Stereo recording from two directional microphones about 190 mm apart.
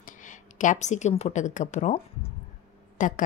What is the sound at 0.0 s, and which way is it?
A woman's voice, 45° left (ahead or behind).